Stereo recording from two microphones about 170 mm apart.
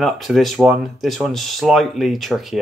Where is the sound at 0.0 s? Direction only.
Centre (ahead or behind).